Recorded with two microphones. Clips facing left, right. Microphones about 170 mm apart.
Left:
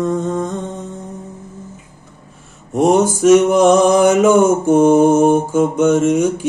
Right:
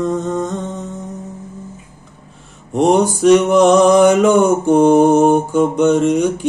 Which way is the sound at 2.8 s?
45° left (ahead or behind).